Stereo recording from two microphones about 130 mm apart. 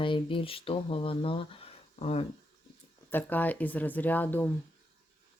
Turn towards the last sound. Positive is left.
turn(degrees=15)  # may be behind; listen again after turning